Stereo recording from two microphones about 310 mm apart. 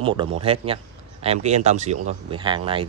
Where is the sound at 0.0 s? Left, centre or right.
Centre.